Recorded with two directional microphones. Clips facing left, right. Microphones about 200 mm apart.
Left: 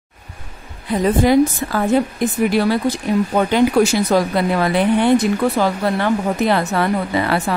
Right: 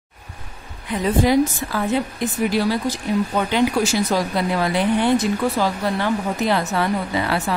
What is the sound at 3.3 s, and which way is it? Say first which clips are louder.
Speech: left 6 dB; 50° left (ahead or behind).